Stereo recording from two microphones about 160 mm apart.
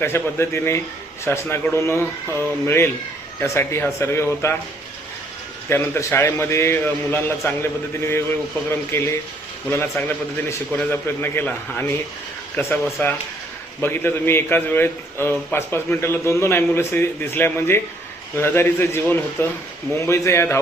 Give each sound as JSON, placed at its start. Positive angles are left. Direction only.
{"t": 0.0, "sound": "a man's voice", "side_deg": 15}
{"t": 5.6, "sound": "a man's voice", "side_deg": 15}